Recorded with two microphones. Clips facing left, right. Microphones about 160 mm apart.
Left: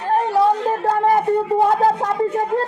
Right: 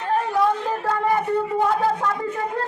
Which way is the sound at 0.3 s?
30° left (ahead or behind).